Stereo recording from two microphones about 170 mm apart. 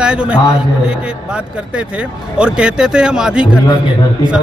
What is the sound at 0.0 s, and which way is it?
Speech, 5° right (ahead or behind).